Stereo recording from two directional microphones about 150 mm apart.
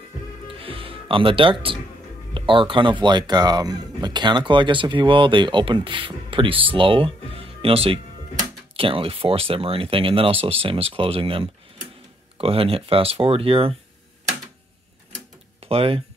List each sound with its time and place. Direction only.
0.5 s music: 40° right (ahead or behind)
2.3 s speech: 35° right (ahead or behind)
15.6 s speech: 40° right (ahead or behind)